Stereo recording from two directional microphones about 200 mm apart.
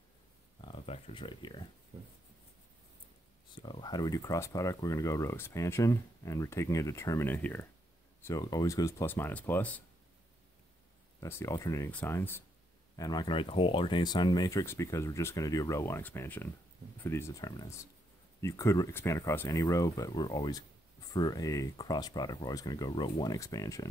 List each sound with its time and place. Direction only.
0.6 s speech: 25° left (ahead or behind)
3.5 s speech: 25° left (ahead or behind); by 9.8 s 5° left (ahead or behind)
11.1 s speech: 15° left (ahead or behind)